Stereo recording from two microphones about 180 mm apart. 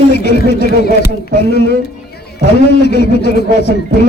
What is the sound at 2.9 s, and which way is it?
Speech, 65° left (ahead or behind).